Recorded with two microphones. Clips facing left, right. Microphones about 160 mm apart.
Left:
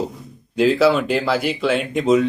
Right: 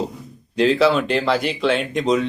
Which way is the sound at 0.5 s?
5° left (ahead or behind).